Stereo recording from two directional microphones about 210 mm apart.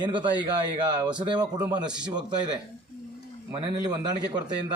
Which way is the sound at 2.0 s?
20° right (ahead or behind).